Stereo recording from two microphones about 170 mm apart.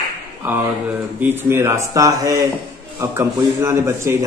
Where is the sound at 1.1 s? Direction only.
10° right (ahead or behind).